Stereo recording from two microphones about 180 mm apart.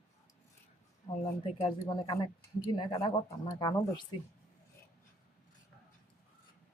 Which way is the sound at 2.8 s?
20° left (ahead or behind).